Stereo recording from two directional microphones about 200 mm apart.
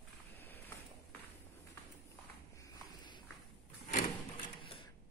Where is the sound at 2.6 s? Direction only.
20° left (ahead or behind).